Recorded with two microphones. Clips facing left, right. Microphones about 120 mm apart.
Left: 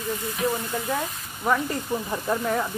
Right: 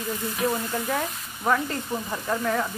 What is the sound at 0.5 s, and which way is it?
Speech, centre (ahead or behind).